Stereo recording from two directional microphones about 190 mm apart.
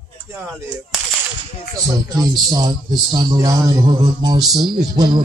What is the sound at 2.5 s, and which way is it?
Speech, 20° right (ahead or behind).